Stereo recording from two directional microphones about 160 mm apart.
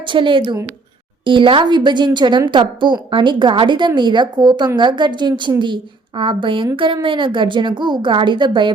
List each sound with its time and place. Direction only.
0.0 s a woman's voice: 30° right (ahead or behind)